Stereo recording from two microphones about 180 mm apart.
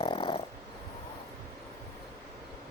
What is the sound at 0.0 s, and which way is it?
Dog, 30° left (ahead or behind).